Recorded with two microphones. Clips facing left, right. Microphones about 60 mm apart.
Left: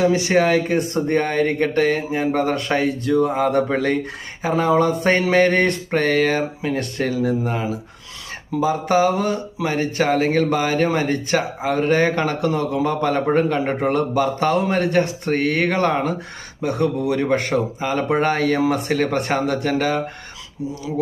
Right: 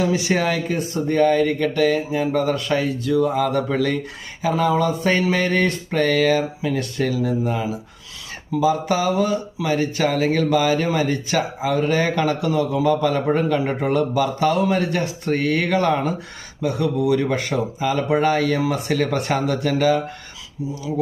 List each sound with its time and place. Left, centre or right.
0.0 s speech: left
0.8 s speech: left
4.8 s mantra: left
5.2 s speech: left